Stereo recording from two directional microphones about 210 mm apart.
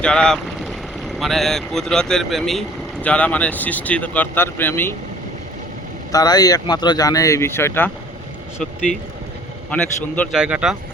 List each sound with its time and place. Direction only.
0.0 s a man's voice: 5° left (ahead or behind)
6.1 s speech: 20° left (ahead or behind)
9.6 s a man's voice: 5° left (ahead or behind)